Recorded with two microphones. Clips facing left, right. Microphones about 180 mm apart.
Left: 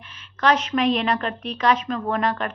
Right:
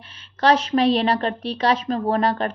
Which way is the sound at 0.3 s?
30° right (ahead or behind).